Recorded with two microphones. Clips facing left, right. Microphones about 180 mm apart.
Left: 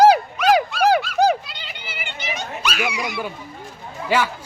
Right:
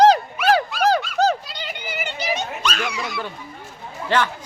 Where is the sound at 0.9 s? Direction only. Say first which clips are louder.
Left 1 dB; 15° left (ahead or behind).